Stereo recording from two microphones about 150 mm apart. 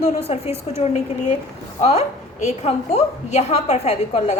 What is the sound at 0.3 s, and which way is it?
A woman's voice, 45° left (ahead or behind).